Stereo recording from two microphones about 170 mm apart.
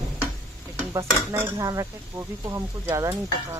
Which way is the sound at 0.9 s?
15° right (ahead or behind).